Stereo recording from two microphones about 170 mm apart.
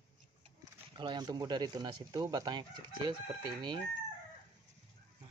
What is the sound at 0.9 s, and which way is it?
Speech, 25° right (ahead or behind).